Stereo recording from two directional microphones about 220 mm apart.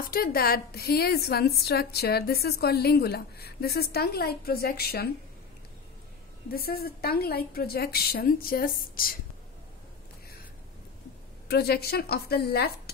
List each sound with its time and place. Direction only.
0.1 s a woman's voice: 45° left (ahead or behind)
6.5 s a woman's voice: 45° left (ahead or behind)
11.4 s a woman's voice: 45° left (ahead or behind)